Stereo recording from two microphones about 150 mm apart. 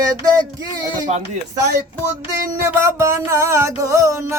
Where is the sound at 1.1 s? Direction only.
45° right (ahead or behind).